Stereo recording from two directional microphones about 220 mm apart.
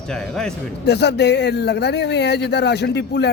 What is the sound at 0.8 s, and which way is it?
A man's voice, 50° left (ahead or behind).